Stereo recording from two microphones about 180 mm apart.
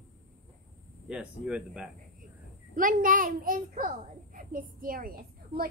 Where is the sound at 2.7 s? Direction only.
50° right (ahead or behind).